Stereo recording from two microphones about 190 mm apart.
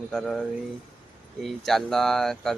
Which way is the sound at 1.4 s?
Centre (ahead or behind).